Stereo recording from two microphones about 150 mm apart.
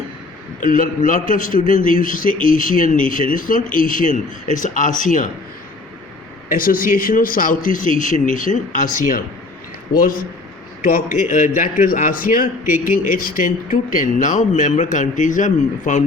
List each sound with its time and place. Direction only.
0.6 s a man's voice: 65° left (ahead or behind)
6.5 s a man's voice: 70° left (ahead or behind)